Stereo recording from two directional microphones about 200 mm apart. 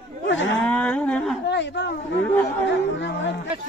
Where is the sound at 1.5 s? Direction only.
60° left (ahead or behind).